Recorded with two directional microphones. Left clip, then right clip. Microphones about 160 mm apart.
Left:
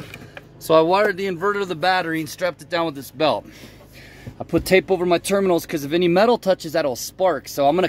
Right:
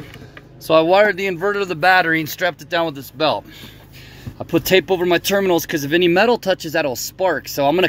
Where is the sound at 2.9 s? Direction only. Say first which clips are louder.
Right 1 dB; 15° left (ahead or behind).